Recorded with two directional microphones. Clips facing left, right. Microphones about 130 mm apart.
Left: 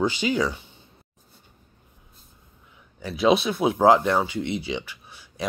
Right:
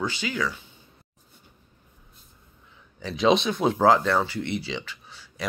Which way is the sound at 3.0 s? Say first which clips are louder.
Left 1 dB; 5° left (ahead or behind).